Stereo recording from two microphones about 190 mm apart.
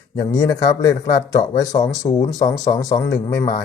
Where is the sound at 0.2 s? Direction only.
20° left (ahead or behind).